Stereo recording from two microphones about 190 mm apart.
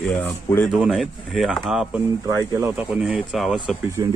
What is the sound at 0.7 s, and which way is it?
Speech, 5° right (ahead or behind).